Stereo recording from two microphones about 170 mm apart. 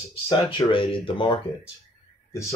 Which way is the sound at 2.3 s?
20° left (ahead or behind).